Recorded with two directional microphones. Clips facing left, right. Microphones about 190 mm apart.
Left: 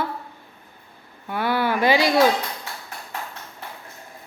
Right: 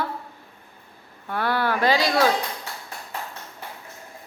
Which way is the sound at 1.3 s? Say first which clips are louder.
Left 1 dB; 5° left (ahead or behind).